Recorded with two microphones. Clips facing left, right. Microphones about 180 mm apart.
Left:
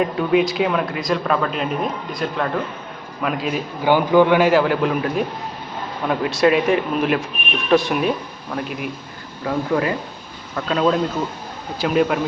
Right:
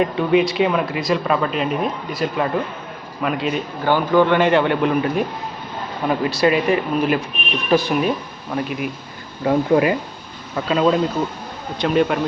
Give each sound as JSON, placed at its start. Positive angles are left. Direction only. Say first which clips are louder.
{"t": 0.0, "sound": "speech", "louder": "right 1 dB", "side_deg": 0}
{"t": 3.8, "sound": "speech", "louder": "left 2 dB", "side_deg": 10}
{"t": 9.5, "sound": "speech", "louder": "right 5 dB", "side_deg": -20}
{"t": 10.5, "sound": "speech", "louder": "right 1 dB", "side_deg": -5}